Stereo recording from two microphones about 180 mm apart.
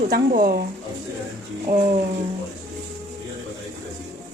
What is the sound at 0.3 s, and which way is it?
Speech, 50° right (ahead or behind).